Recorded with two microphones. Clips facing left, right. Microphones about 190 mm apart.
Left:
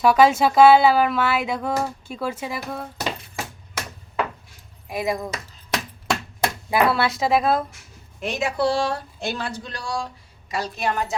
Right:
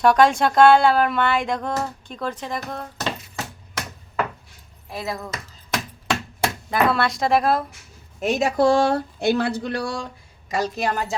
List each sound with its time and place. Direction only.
0.0 s speech: 5° left (ahead or behind)
4.9 s speech: 15° left (ahead or behind)
6.7 s speech: 5° left (ahead or behind)
8.2 s speech: 40° right (ahead or behind); by 9.9 s 65° right (ahead or behind)
10.5 s a woman's voice: 40° right (ahead or behind)